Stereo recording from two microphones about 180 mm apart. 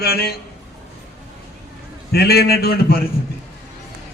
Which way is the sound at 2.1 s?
60° left (ahead or behind).